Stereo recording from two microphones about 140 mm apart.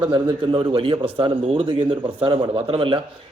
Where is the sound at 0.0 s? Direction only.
35° right (ahead or behind).